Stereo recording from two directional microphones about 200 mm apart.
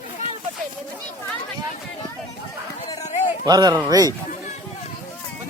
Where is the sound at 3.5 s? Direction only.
20° right (ahead or behind).